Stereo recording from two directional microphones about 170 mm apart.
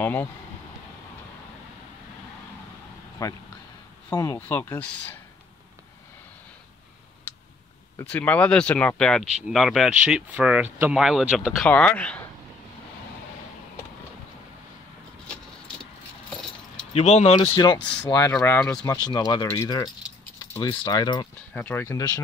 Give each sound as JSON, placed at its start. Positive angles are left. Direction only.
{"t": 0.0, "sound": "speech", "side_deg": 10}
{"t": 3.2, "sound": "speech", "side_deg": 20}
{"t": 8.0, "sound": "speech", "side_deg": 10}
{"t": 16.9, "sound": "speech", "side_deg": 40}
{"t": 17.7, "sound": "speech", "side_deg": 5}
{"t": 18.0, "sound": "speech", "side_deg": 25}
{"t": 21.5, "sound": "speech", "side_deg": 15}